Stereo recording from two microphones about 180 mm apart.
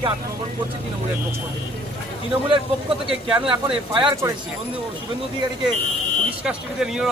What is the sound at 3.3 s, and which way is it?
Speech, 30° right (ahead or behind).